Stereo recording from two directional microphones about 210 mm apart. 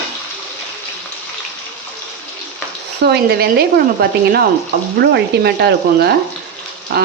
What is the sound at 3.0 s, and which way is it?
Speech, 50° right (ahead or behind).